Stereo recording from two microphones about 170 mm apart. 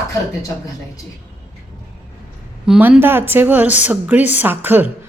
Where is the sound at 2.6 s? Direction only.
5° right (ahead or behind).